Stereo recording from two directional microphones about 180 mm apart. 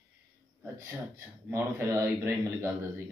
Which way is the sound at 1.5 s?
15° right (ahead or behind).